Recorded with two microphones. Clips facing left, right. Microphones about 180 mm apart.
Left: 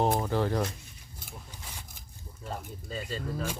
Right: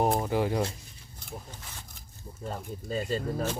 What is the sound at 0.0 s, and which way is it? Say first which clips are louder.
Speech: right 1 dB; 10° right (ahead or behind).